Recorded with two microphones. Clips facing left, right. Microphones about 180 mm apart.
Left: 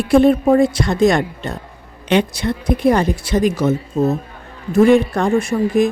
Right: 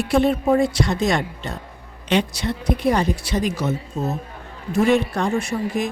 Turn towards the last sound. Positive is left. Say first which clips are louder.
# left 8 dB
turn(degrees=55)  # may be behind; listen again after turning